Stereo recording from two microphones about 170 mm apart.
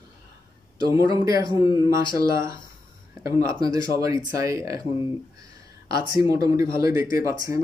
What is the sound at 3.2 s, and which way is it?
Speech, 20° right (ahead or behind).